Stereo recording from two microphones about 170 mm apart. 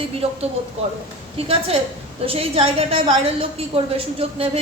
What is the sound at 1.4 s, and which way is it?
A woman's voice, 35° right (ahead or behind).